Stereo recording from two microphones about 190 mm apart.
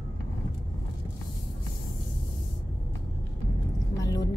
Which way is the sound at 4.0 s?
20° left (ahead or behind).